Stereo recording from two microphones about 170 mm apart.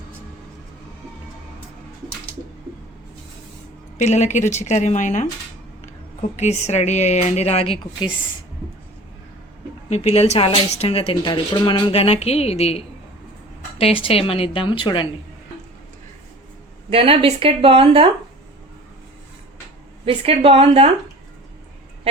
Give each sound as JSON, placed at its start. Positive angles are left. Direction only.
{"t": 3.9, "sound": "speech", "side_deg": 40}
{"t": 6.3, "sound": "speech", "side_deg": 40}
{"t": 9.9, "sound": "speech", "side_deg": 40}
{"t": 16.9, "sound": "speech", "side_deg": -35}
{"t": 20.1, "sound": "speech", "side_deg": -35}